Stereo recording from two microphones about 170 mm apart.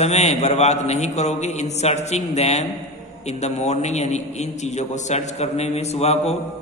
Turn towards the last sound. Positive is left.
turn(degrees=40)  # may be behind; listen again after turning